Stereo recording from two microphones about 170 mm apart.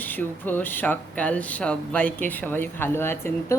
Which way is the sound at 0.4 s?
10° left (ahead or behind).